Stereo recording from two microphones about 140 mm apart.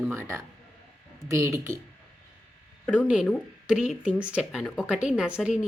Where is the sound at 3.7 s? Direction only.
5° right (ahead or behind).